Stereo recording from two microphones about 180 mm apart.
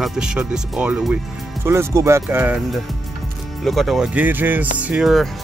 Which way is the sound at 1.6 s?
15° right (ahead or behind).